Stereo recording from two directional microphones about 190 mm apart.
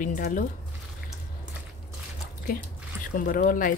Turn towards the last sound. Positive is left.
turn(degrees=45)  # may be behind; listen again after turning